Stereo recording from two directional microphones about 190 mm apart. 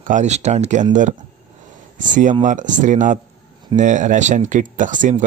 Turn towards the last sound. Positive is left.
turn(degrees=-40)  # may be behind; listen again after turning